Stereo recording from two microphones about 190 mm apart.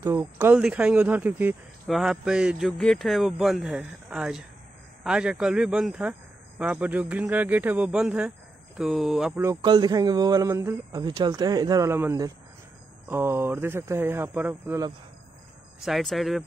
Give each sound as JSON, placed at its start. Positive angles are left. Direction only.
{"t": 0.0, "sound": "speech", "side_deg": -15}
{"t": 9.6, "sound": "speech", "side_deg": -20}
{"t": 15.8, "sound": "speech", "side_deg": 0}